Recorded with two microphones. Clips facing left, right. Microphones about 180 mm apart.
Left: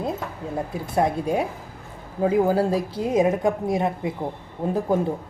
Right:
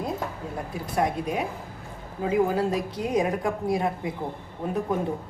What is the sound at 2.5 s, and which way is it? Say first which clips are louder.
A woman's voice: left 4 dB; 30° left (ahead or behind).